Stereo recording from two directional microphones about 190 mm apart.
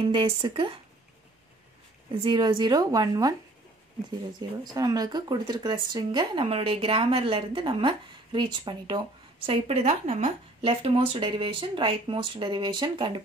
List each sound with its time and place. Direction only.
0.0 s speech: 25° right (ahead or behind)
2.2 s speech: 25° right (ahead or behind)
4.7 s speech: 20° right (ahead or behind)